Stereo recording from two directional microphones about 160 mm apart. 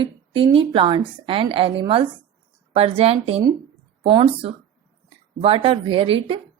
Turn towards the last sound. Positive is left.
turn(degrees=-35)  # may be behind; listen again after turning